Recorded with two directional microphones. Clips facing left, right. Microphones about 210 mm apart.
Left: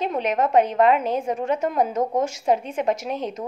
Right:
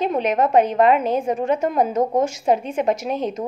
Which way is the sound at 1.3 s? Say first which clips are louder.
Right 3 dB; 30° right (ahead or behind).